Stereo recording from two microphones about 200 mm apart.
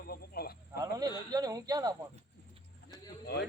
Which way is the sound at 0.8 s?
20° right (ahead or behind).